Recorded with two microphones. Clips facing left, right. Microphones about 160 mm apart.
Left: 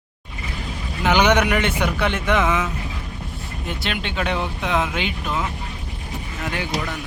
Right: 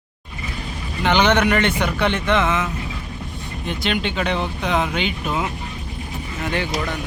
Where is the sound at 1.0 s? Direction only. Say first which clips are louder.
Even; 10° left (ahead or behind).